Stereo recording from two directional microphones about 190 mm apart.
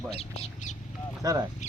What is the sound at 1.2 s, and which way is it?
Speech, 20° right (ahead or behind).